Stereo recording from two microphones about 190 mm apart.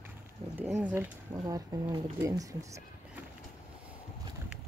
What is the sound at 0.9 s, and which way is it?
Speech, 15° right (ahead or behind).